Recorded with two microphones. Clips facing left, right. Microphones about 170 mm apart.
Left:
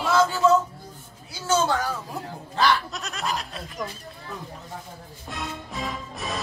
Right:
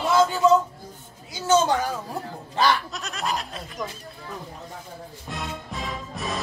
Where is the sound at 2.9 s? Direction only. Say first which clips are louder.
Right 1 dB; centre (ahead or behind).